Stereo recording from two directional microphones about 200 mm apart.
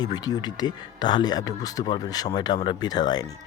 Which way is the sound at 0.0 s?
20° left (ahead or behind).